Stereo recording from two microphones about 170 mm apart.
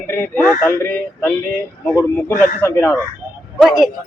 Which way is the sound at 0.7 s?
15° left (ahead or behind).